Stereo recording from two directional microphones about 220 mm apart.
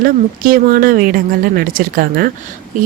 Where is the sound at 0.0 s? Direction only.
40° right (ahead or behind).